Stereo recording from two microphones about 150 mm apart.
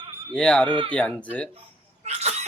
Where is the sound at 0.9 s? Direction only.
10° left (ahead or behind).